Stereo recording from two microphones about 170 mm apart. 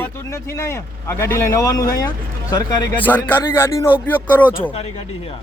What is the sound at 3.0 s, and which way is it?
Speech, 10° left (ahead or behind).